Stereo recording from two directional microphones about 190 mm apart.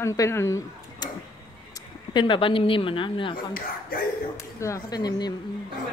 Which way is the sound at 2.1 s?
25° left (ahead or behind).